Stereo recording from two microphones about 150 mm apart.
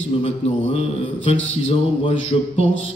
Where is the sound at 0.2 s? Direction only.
40° left (ahead or behind).